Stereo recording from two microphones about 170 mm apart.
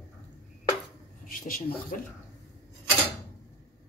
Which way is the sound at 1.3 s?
55° left (ahead or behind).